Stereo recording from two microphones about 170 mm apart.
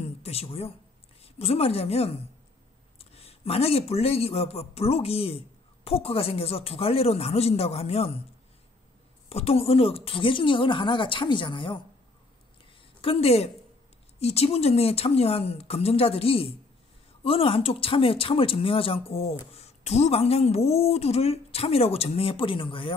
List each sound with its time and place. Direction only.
0.0 s a sound: 35° left (ahead or behind)
1.2 s a woman's voice: 35° left (ahead or behind)
9.3 s speech: 35° left (ahead or behind)
13.0 s speech: 35° left (ahead or behind)